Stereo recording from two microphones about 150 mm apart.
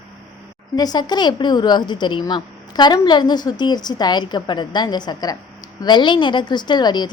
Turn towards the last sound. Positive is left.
turn(degrees=30)  # may be behind; listen again after turning